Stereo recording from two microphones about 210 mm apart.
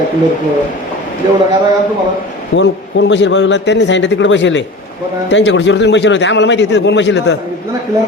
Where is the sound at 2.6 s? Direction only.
60° left (ahead or behind).